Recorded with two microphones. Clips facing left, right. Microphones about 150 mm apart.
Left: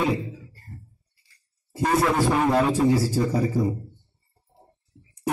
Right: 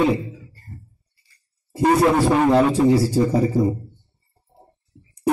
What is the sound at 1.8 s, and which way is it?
A man's voice, 25° right (ahead or behind).